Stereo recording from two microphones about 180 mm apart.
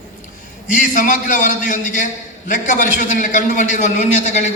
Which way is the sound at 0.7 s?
45° left (ahead or behind).